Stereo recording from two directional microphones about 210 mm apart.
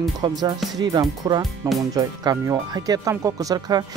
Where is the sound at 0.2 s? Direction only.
20° right (ahead or behind).